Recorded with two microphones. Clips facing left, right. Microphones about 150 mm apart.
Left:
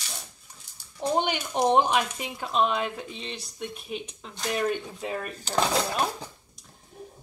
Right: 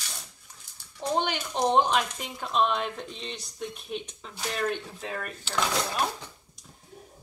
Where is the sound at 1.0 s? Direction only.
15° left (ahead or behind).